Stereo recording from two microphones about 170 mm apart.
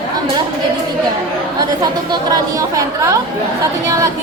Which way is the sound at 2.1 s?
20° right (ahead or behind).